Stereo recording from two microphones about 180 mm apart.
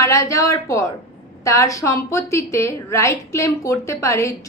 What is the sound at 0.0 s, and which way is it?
A woman's voice, 15° left (ahead or behind).